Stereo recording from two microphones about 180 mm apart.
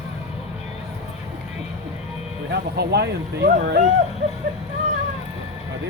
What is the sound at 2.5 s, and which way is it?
Speech, 65° right (ahead or behind).